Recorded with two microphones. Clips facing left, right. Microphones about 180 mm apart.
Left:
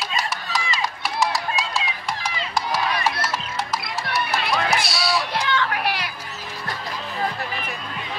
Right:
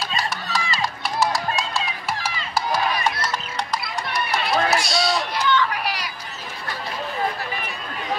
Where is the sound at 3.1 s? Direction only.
5° left (ahead or behind).